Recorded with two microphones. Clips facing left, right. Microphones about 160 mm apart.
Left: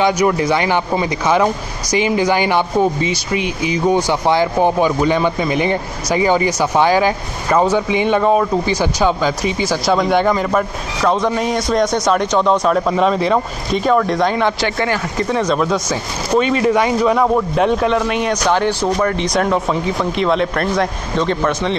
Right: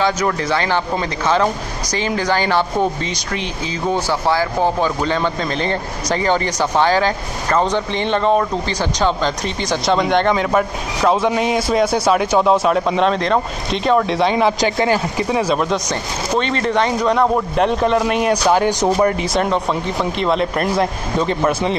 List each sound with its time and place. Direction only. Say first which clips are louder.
0.0 s speech: left 4 dB; 15° left (ahead or behind)
14.0 s speech: even; 5° right (ahead or behind)
14.6 s speech: right 2 dB; 15° right (ahead or behind)